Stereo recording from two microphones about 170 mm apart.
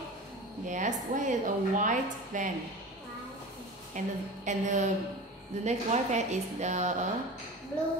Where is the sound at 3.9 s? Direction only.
45° right (ahead or behind).